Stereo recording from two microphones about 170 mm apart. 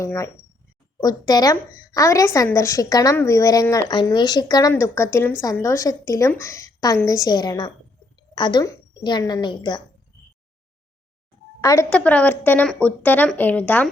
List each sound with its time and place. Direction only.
0.0 s a woman's voice: 20° left (ahead or behind)
11.6 s a woman's voice: 20° left (ahead or behind)
11.9 s a woman's voice: 5° left (ahead or behind)